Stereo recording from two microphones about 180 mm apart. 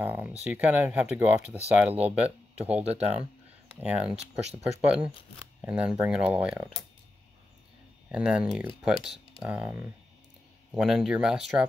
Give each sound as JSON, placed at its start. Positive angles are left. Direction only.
{"t": 0.0, "sound": "speech", "side_deg": -10}
{"t": 2.8, "sound": "speech", "side_deg": -35}
{"t": 3.8, "sound": "speech", "side_deg": -5}
{"t": 5.6, "sound": "speech", "side_deg": -5}
{"t": 8.1, "sound": "speech", "side_deg": -5}